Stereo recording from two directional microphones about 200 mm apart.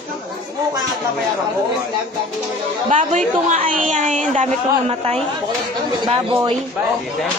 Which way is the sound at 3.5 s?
40° right (ahead or behind).